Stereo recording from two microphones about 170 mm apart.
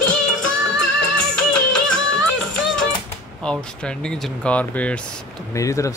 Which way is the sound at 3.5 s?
5° left (ahead or behind).